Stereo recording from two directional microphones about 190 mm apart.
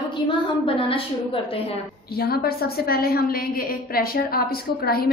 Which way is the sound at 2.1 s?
55° left (ahead or behind).